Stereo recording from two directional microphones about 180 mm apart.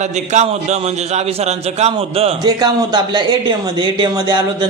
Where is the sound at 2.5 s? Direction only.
25° right (ahead or behind).